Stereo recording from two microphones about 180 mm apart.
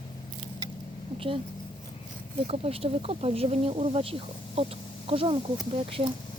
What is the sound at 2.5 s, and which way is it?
Speech, 30° right (ahead or behind).